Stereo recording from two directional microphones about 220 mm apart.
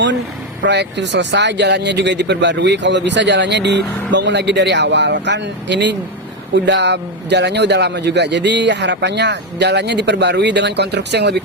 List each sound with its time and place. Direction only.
0.6 s speech: 50° right (ahead or behind)